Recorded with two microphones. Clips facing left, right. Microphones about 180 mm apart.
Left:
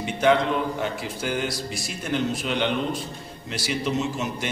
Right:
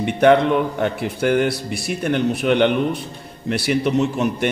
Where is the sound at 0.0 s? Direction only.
60° right (ahead or behind).